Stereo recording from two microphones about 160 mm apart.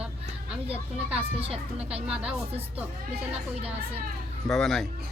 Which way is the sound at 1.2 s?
35° right (ahead or behind).